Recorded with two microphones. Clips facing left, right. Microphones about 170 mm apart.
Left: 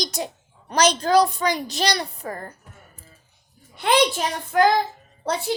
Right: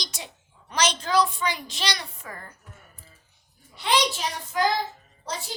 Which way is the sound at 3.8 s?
50° left (ahead or behind).